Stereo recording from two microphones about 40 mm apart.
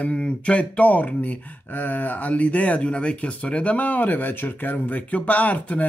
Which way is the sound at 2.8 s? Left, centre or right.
Left.